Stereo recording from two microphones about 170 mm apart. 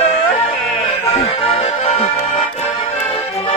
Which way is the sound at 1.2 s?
35° left (ahead or behind).